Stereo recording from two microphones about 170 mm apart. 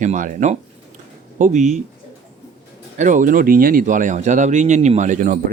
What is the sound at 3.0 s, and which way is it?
Speech, 50° right (ahead or behind).